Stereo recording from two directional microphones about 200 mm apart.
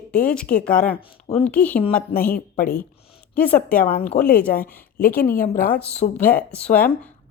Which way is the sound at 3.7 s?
45° left (ahead or behind).